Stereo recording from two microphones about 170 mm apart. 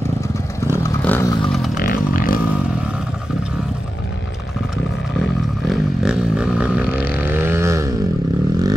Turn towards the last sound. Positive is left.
turn(degrees=-15)  # may be behind; listen again after turning